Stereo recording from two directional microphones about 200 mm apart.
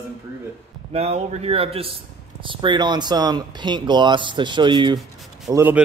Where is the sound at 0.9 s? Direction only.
30° right (ahead or behind).